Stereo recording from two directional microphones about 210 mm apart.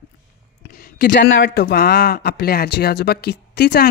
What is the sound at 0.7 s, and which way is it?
Speech, 45° left (ahead or behind).